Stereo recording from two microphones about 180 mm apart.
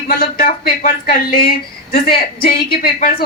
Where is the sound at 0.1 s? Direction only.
55° left (ahead or behind).